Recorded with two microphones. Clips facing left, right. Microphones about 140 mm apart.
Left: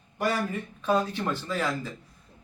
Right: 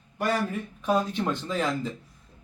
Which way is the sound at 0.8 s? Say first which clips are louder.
Even; 15° right (ahead or behind).